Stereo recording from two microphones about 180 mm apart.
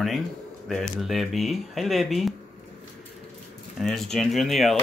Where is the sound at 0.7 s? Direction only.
Centre (ahead or behind).